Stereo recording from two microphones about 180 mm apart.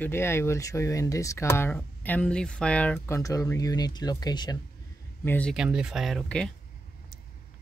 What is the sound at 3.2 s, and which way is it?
Speech, 20° left (ahead or behind).